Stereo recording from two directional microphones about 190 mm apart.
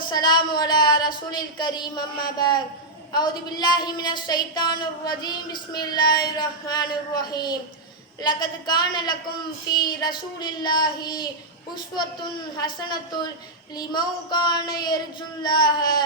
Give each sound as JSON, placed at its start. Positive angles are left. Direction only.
{"t": 0.1, "sound": "a woman's voice", "side_deg": 20}
{"t": 12.5, "sound": "a woman's voice", "side_deg": 20}